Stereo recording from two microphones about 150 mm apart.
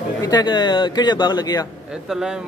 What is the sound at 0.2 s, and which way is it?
A man's voice, 25° left (ahead or behind).